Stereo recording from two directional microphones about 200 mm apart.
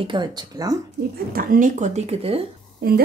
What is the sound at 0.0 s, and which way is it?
Speech, 25° right (ahead or behind).